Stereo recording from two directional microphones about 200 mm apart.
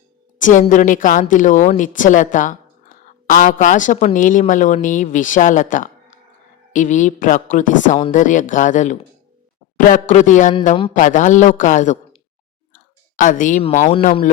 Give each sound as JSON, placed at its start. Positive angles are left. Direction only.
{"t": 0.3, "sound": "speech", "side_deg": 40}